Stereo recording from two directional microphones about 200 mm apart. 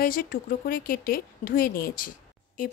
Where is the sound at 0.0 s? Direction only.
45° left (ahead or behind).